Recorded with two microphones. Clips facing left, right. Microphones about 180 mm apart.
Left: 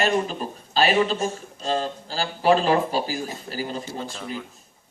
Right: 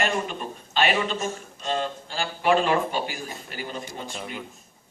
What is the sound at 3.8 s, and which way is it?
Speech, 15° right (ahead or behind).